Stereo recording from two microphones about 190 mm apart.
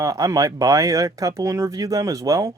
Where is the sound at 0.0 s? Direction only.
20° right (ahead or behind).